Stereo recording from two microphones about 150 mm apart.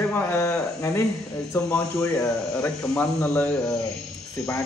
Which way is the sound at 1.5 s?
15° left (ahead or behind).